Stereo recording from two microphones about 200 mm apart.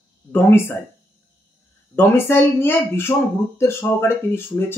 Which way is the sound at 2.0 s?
10° left (ahead or behind).